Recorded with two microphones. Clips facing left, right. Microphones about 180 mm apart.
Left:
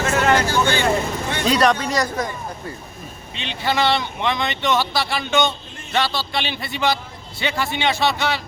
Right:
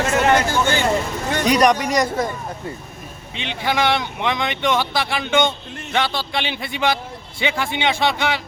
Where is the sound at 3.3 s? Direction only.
15° right (ahead or behind).